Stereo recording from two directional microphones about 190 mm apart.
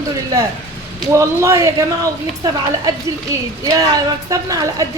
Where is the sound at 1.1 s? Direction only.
15° right (ahead or behind).